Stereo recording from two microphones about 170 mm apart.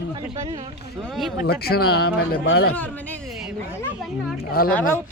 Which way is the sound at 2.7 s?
10° left (ahead or behind).